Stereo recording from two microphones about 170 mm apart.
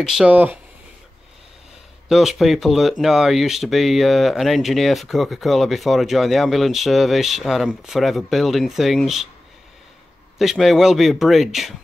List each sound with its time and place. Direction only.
0.0 s speech: 5° right (ahead or behind)
2.0 s speech: centre (ahead or behind)
10.4 s speech: centre (ahead or behind)